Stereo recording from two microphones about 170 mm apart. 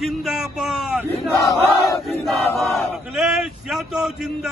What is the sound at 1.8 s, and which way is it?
Speech, 20° left (ahead or behind).